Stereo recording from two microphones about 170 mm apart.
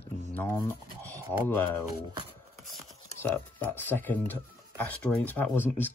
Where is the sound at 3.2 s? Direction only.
10° left (ahead or behind).